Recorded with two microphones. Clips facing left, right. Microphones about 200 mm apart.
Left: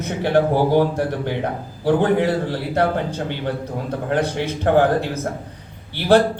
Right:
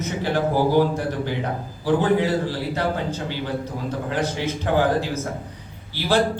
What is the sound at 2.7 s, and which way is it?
Speech, 55° left (ahead or behind).